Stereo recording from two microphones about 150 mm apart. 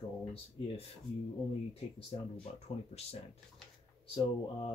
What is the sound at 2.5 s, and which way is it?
Speech, 45° left (ahead or behind).